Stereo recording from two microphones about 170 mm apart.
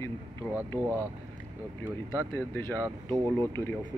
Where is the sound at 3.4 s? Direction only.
15° left (ahead or behind).